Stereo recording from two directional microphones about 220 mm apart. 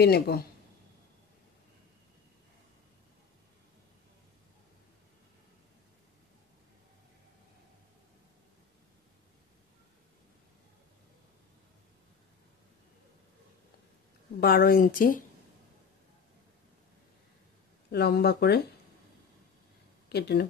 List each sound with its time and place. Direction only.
0.0 s speech: 45° left (ahead or behind)
14.4 s speech: 40° left (ahead or behind)
17.9 s speech: 45° left (ahead or behind)
20.1 s speech: 45° left (ahead or behind)